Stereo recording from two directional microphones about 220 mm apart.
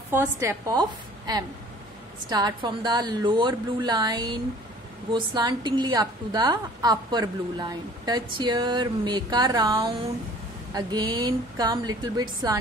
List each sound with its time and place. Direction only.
0.1 s a woman's voice: 10° right (ahead or behind)